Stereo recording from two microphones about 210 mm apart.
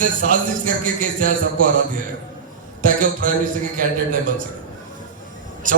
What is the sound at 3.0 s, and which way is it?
Speech, 40° right (ahead or behind).